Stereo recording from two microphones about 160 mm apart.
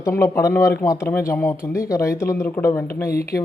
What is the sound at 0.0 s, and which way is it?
A man's voice, 20° left (ahead or behind).